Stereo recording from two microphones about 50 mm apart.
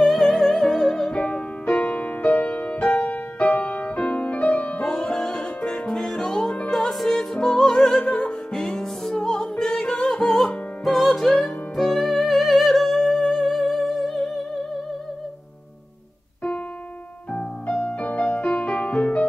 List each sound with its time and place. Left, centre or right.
0.0 s music: centre; by 4.9 s left
4.9 s music: centre
17.3 s music: left